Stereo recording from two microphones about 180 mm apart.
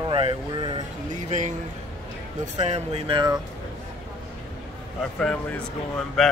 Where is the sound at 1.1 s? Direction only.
40° right (ahead or behind).